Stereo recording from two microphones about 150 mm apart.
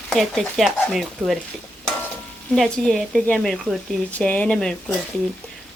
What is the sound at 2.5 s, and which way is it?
Stir, centre (ahead or behind).